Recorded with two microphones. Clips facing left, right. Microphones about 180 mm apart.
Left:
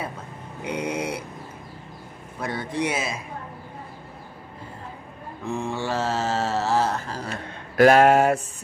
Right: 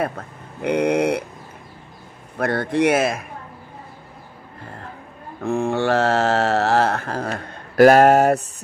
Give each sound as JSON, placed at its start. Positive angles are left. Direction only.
{"t": 0.6, "sound": "mantra", "side_deg": -65}
{"t": 2.3, "sound": "a man's voice", "side_deg": -70}
{"t": 5.4, "sound": "mantra", "side_deg": -60}